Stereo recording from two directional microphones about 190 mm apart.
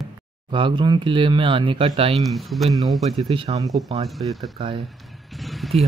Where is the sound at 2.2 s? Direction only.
Centre (ahead or behind).